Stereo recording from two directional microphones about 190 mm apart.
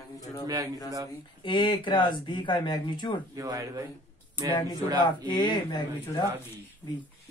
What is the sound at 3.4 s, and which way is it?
Speech, 20° right (ahead or behind).